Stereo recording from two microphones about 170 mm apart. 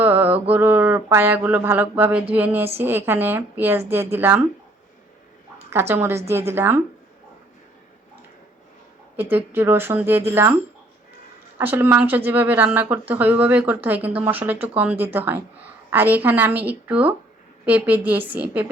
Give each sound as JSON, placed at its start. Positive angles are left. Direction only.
{"t": 0.0, "sound": "mantra", "side_deg": -10}
{"t": 0.5, "sound": "speech", "side_deg": -10}
{"t": 5.9, "sound": "speech", "side_deg": -15}
{"t": 9.1, "sound": "speech", "side_deg": -10}
{"t": 11.5, "sound": "speech", "side_deg": -10}